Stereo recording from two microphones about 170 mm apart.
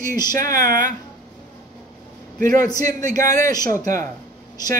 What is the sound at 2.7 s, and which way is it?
A man's voice, 20° left (ahead or behind).